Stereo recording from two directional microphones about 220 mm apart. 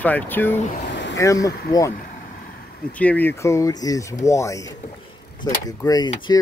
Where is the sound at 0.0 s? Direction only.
10° left (ahead or behind).